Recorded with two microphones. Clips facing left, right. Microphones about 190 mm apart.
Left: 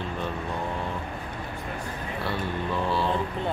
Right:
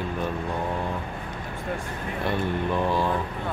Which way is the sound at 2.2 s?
15° right (ahead or behind).